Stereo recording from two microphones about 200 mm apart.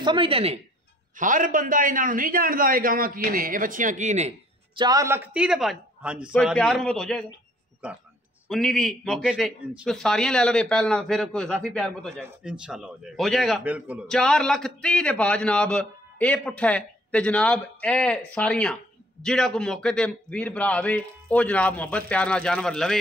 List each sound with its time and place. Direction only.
0.0 s speech: 25° right (ahead or behind)
1.1 s a man's voice: 40° right (ahead or behind)
4.7 s a man's voice: 20° right (ahead or behind); by 22.9 s centre (ahead or behind)